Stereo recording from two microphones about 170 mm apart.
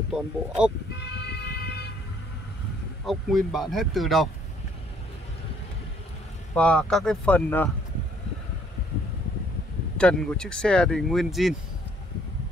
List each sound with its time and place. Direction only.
0.1 s speech: 5° right (ahead or behind)
1.0 s vehicle: 80° left
3.1 s speech: centre (ahead or behind)
6.5 s speech: 5° left (ahead or behind)
9.9 s speech: 5° left (ahead or behind)